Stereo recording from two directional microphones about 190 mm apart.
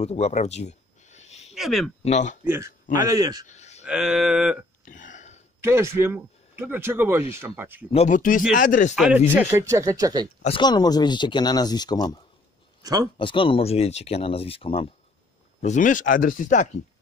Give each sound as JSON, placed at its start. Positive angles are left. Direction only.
{"t": 0.0, "sound": "a sound", "side_deg": 35}
{"t": 1.5, "sound": "speech", "side_deg": 0}
{"t": 2.0, "sound": "speech", "side_deg": 40}
{"t": 2.4, "sound": "speech", "side_deg": -10}
{"t": 3.4, "sound": "a sound", "side_deg": 35}
{"t": 3.8, "sound": "speech", "side_deg": -5}
{"t": 4.8, "sound": "burping", "side_deg": 40}
{"t": 5.6, "sound": "speech", "side_deg": -15}
{"t": 7.9, "sound": "speech", "side_deg": 40}
{"t": 8.9, "sound": "speech", "side_deg": 0}
{"t": 10.4, "sound": "speech", "side_deg": 25}
{"t": 12.8, "sound": "speech", "side_deg": -20}
{"t": 13.2, "sound": "speech", "side_deg": 25}
{"t": 15.6, "sound": "speech", "side_deg": 40}